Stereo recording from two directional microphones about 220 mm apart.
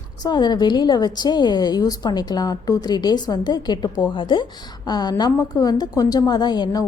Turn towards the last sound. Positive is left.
turn(degrees=20)  # may be behind; listen again after turning